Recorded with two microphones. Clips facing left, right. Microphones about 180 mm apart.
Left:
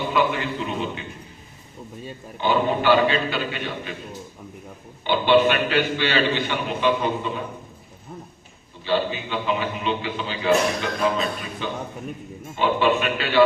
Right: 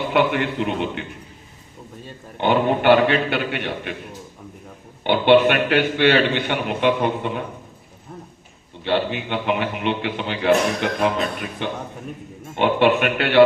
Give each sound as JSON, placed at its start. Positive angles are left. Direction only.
{"t": 0.1, "sound": "a man's voice", "side_deg": -65}
{"t": 2.4, "sound": "a man's voice", "side_deg": -60}
{"t": 5.0, "sound": "a man's voice", "side_deg": -60}
{"t": 8.8, "sound": "a man's voice", "side_deg": -65}